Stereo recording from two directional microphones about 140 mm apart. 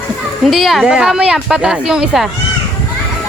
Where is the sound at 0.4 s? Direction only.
Centre (ahead or behind).